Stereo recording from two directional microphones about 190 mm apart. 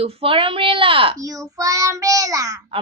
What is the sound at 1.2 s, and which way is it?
A child's voice, 20° right (ahead or behind).